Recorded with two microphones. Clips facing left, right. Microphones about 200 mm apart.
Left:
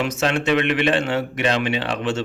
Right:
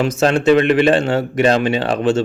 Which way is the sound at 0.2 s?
35° right (ahead or behind).